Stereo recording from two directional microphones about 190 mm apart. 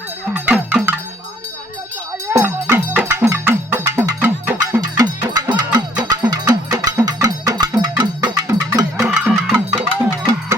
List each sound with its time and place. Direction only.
0.3 s music: 10° right (ahead or behind)
2.2 s music: 15° right (ahead or behind)
9.0 s music: 5° right (ahead or behind)